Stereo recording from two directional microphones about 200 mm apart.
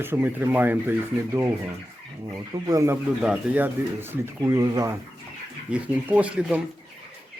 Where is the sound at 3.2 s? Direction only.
5° right (ahead or behind).